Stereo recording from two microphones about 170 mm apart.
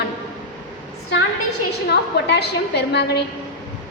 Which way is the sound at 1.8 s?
75° left (ahead or behind).